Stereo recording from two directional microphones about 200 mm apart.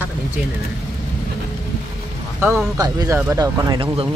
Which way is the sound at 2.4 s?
10° right (ahead or behind).